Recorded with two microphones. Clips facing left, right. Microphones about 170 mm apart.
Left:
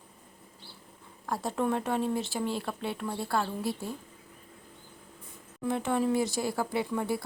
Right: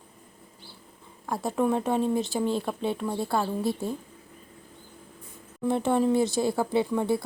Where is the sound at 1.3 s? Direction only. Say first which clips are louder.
Right 4 dB; 10° right (ahead or behind).